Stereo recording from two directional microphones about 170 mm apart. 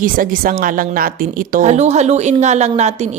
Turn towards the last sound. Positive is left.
turn(degrees=-40)  # may be behind; listen again after turning